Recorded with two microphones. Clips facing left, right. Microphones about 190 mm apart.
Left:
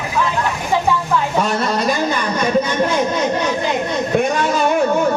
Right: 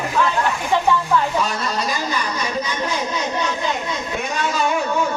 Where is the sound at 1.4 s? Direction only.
50° left (ahead or behind).